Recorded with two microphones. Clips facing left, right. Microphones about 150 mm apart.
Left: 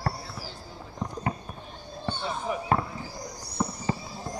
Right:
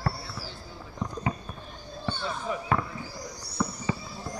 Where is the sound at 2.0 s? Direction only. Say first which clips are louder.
Left 1 dB; 20° left (ahead or behind).